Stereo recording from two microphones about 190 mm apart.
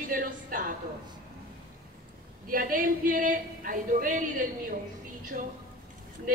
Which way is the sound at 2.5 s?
45° right (ahead or behind).